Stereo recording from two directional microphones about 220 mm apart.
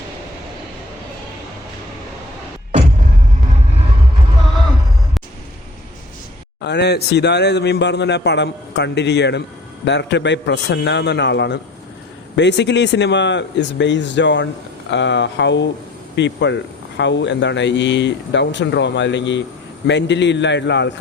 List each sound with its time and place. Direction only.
6.6 s a man's voice: 50° left (ahead or behind)